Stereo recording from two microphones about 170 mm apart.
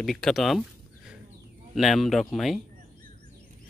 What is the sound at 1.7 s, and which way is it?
Speech, centre (ahead or behind).